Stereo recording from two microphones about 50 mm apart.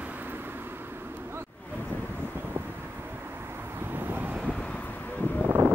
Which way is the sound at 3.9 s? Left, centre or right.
Right.